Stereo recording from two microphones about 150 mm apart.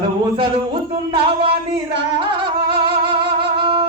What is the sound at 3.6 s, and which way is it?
Wind instrument, 35° right (ahead or behind).